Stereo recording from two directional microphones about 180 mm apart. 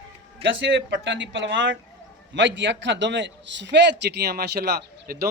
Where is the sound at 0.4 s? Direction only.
80° right.